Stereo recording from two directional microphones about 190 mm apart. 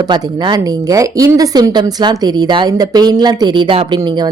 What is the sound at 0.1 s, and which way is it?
Speech, 20° right (ahead or behind).